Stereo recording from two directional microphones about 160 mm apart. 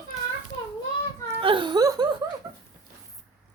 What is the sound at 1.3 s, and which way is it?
Laughter, 30° right (ahead or behind).